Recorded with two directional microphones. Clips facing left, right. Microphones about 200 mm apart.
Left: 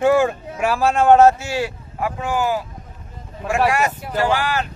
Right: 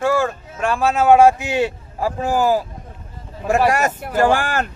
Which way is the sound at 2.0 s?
35° right (ahead or behind).